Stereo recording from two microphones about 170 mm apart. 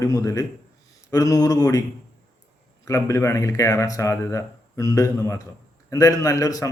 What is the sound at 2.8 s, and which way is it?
A man's voice, 20° left (ahead or behind).